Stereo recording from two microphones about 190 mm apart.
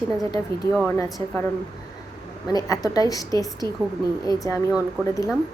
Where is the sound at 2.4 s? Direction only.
20° left (ahead or behind).